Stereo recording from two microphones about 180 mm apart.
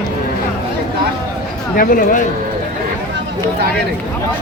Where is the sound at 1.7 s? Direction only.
50° left (ahead or behind).